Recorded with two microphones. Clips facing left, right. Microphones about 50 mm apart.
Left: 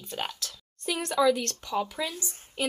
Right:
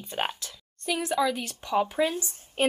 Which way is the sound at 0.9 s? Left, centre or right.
Centre.